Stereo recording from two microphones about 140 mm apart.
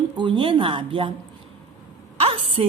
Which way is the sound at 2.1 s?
45° right (ahead or behind).